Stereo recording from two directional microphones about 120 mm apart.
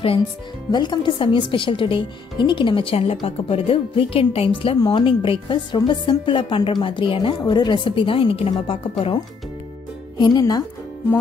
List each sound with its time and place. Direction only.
0.7 s a woman's voice: 40° left (ahead or behind)
10.1 s speech: 35° left (ahead or behind)